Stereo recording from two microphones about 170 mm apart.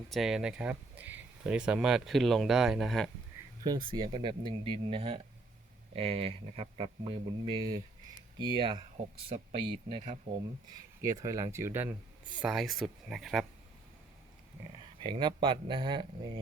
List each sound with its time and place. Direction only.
0.1 s speech: centre (ahead or behind)
3.6 s speech: 25° right (ahead or behind)
11.0 s speech: 20° right (ahead or behind)
12.4 s speech: centre (ahead or behind)
15.0 s speech: 30° right (ahead or behind)